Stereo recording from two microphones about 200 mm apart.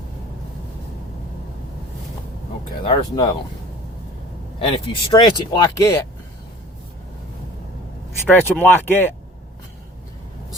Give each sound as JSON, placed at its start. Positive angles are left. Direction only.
{"t": 2.8, "sound": "speech", "side_deg": 20}
{"t": 4.9, "sound": "speech", "side_deg": 20}
{"t": 8.3, "sound": "speech", "side_deg": 10}